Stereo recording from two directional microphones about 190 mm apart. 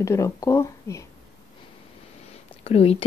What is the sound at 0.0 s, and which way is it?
A woman's voice, 15° left (ahead or behind).